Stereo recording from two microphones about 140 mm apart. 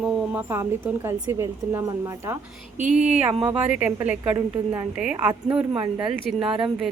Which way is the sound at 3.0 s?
10° right (ahead or behind).